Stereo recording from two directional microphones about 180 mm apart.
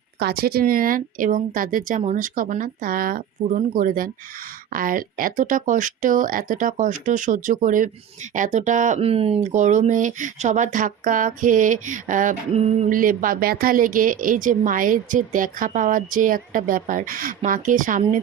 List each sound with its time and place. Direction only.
0.2 s speech: 60° right (ahead or behind)